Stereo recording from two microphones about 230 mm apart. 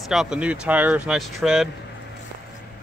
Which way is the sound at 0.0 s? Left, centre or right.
Centre.